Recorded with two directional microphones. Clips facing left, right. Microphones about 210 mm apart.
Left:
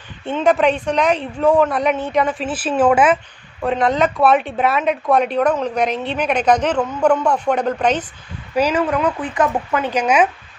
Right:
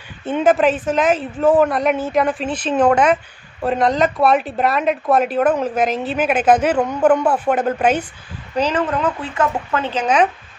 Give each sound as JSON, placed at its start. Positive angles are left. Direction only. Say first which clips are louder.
{"t": 0.4, "sound": "speech", "louder": "right 1 dB", "side_deg": 0}
{"t": 8.5, "sound": "speech", "louder": "left 2 dB", "side_deg": 10}